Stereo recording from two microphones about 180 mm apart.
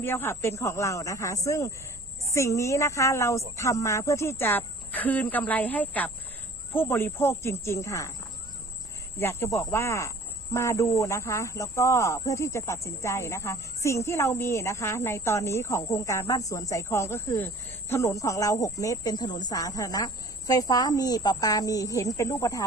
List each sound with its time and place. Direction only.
0.0 s speech: 15° left (ahead or behind)
9.1 s speech: 15° left (ahead or behind)